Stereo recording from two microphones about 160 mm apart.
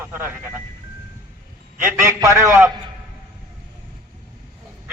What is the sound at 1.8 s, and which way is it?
Speech, 15° right (ahead or behind).